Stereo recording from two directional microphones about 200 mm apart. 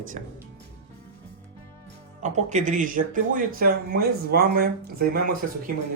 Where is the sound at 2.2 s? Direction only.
35° right (ahead or behind).